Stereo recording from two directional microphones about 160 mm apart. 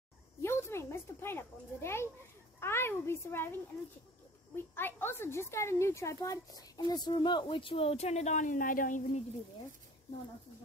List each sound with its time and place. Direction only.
0.4 s a child's voice: 15° left (ahead or behind)
4.6 s a woman's voice: 15° left (ahead or behind); by 9.2 s 55° left (ahead or behind)